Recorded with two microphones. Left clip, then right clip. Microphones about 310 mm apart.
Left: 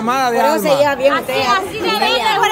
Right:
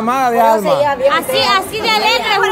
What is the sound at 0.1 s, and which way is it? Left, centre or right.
Speech, centre.